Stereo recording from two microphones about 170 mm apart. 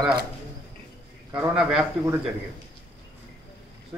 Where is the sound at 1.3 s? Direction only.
5° right (ahead or behind).